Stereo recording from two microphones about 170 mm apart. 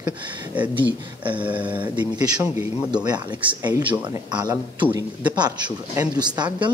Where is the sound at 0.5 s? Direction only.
10° right (ahead or behind); by 4.8 s 25° right (ahead or behind).